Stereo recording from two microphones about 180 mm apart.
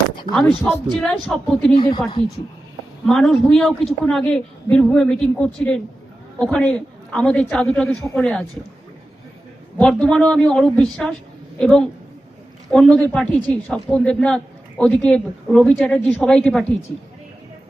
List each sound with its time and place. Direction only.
0.3 s speech: 35° left (ahead or behind)
0.9 s speech: 5° left (ahead or behind)
1.7 s speech: 25° left (ahead or behind)
3.1 s speech: 5° left (ahead or behind)
9.7 s speech: 5° left (ahead or behind)